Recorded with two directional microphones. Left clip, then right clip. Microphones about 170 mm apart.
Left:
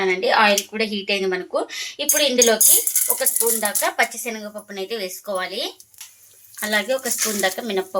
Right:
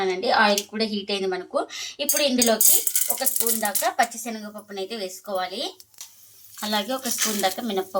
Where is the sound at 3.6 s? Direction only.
30° left (ahead or behind).